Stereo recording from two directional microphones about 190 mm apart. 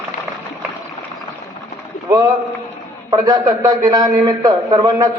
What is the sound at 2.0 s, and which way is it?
A man's voice, 20° right (ahead or behind).